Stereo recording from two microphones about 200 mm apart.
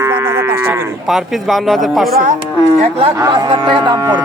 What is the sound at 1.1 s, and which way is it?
Speech, centre (ahead or behind).